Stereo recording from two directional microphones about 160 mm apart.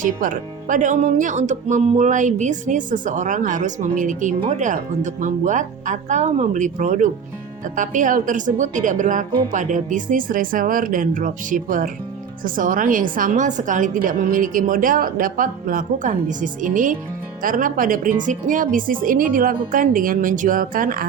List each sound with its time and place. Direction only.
0.0 s a woman's voice: 55° right (ahead or behind)